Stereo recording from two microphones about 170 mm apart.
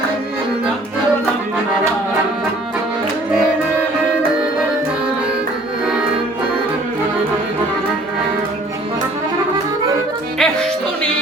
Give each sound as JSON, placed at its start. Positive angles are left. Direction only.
{"t": 5.8, "sound": "music", "side_deg": -5}
{"t": 10.3, "sound": "music", "side_deg": 5}